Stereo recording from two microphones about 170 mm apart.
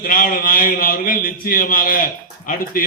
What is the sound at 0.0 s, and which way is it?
A man's voice, 55° left (ahead or behind).